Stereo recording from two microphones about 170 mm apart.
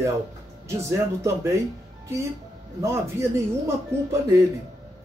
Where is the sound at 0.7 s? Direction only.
15° right (ahead or behind).